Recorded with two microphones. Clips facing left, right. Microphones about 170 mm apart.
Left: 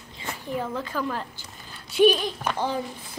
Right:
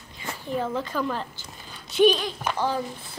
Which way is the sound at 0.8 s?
5° left (ahead or behind).